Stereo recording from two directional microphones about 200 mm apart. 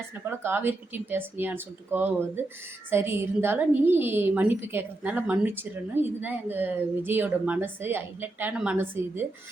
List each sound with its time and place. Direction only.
0.1 s a woman's voice: 10° right (ahead or behind)